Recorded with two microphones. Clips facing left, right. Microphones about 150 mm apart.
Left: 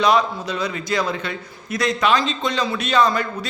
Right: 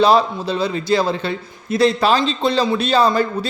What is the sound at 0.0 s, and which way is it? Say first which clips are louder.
A man's voice: right 4 dB; 30° right (ahead or behind).